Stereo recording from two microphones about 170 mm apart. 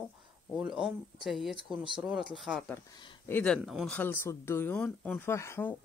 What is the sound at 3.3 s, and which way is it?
Speech, 10° left (ahead or behind).